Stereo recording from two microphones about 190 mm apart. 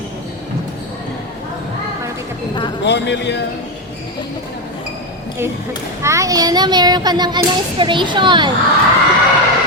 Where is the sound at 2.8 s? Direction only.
65° left (ahead or behind).